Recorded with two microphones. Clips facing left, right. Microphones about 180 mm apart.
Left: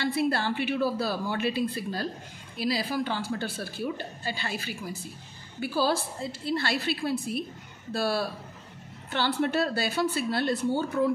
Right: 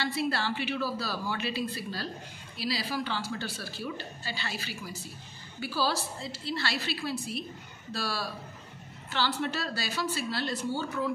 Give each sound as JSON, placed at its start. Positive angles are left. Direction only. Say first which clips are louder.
{"t": 0.0, "sound": "a woman's voice", "louder": "left 4 dB", "side_deg": 55}